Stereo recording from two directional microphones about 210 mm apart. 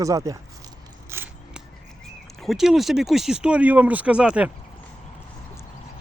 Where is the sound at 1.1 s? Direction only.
10° right (ahead or behind).